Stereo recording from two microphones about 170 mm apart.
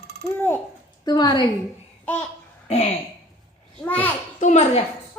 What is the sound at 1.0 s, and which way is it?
Speech, 25° left (ahead or behind).